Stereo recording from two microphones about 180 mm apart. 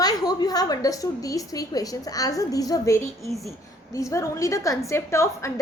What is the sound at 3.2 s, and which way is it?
Speech, centre (ahead or behind).